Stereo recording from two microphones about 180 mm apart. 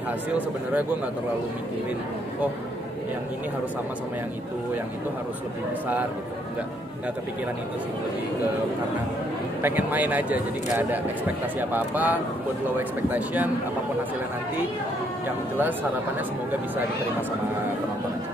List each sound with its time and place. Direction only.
9.6 s speech: 10° right (ahead or behind)